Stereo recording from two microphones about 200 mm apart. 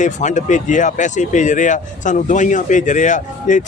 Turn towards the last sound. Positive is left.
turn(degrees=40)  # may be behind; listen again after turning